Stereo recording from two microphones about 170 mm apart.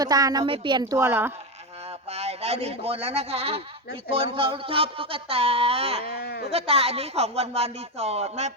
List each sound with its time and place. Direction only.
0.0 s a woman's voice: 20° right (ahead or behind)
2.0 s a man's voice: 40° right (ahead or behind)
6.1 s speech: 70° left (ahead or behind)
6.5 s speech: 35° right (ahead or behind)